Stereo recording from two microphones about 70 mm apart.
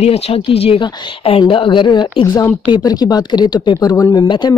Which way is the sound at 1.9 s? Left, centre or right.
Left.